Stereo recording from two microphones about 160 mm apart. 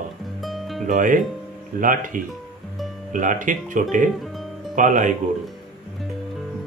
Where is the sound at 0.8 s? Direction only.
55° right (ahead or behind).